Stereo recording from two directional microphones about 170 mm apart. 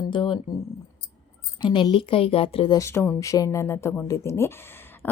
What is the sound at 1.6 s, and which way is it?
Speech, 30° left (ahead or behind).